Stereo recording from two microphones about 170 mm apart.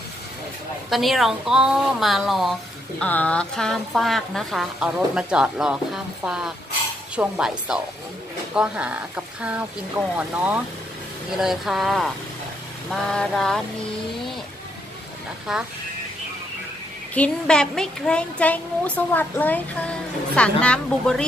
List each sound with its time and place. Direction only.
0.8 s a woman's voice: centre (ahead or behind)
15.5 s a woman's voice: centre (ahead or behind)
17.1 s a child's voice: 5° left (ahead or behind)